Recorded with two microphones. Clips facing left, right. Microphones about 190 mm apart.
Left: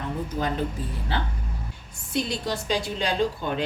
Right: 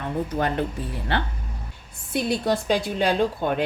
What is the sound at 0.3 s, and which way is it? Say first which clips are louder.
Speech: right 1 dB; 65° right (ahead or behind).